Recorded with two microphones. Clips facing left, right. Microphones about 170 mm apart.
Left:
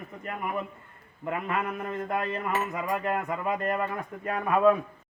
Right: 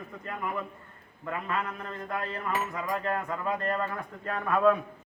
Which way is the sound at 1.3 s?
15° left (ahead or behind).